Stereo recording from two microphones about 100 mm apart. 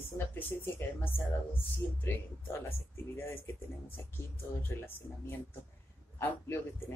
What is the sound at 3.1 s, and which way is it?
Speech, 20° left (ahead or behind).